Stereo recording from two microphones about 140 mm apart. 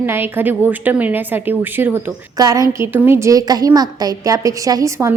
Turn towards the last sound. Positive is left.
turn(degrees=-20)  # may be behind; listen again after turning